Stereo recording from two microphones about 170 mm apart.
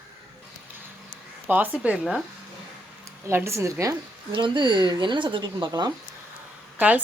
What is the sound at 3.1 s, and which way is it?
Speech, 15° right (ahead or behind).